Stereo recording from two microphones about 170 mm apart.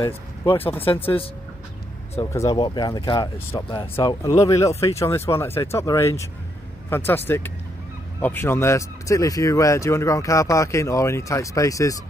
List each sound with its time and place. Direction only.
0.0 s speech: 30° left (ahead or behind)
2.1 s speech: 20° left (ahead or behind)
3.6 s speech: 30° left (ahead or behind)
7.2 s speech: 15° left (ahead or behind)